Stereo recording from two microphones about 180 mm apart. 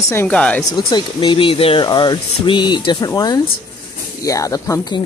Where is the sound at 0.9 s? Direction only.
25° left (ahead or behind).